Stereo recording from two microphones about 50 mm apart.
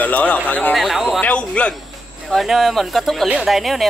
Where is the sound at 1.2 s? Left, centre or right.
Left.